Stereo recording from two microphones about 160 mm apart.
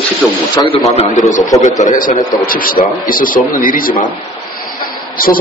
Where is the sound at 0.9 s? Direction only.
45° left (ahead or behind).